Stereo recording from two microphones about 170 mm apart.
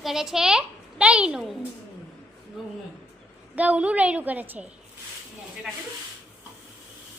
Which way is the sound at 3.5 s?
10° right (ahead or behind).